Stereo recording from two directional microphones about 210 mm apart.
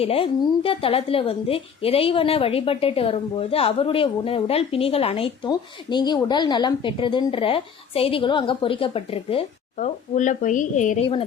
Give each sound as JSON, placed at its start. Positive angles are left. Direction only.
{"t": 0.0, "sound": "a woman's voice", "side_deg": 25}